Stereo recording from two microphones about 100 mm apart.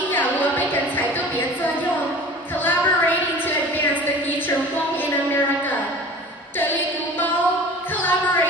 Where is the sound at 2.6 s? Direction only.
20° left (ahead or behind).